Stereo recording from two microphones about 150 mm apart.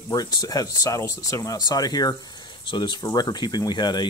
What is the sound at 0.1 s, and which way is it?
Speech, 25° left (ahead or behind).